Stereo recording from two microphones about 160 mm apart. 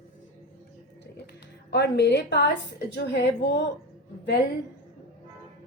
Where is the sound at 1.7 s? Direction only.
90° left.